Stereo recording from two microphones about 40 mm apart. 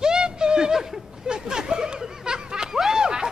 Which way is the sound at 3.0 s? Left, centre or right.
Centre.